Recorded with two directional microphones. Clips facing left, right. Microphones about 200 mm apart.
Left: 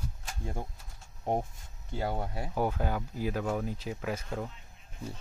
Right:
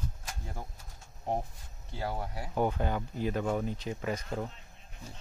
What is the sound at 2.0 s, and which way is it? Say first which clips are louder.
Speech: left 2 dB; 25° left (ahead or behind).